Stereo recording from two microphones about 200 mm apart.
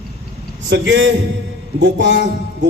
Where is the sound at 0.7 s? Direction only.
65° right (ahead or behind).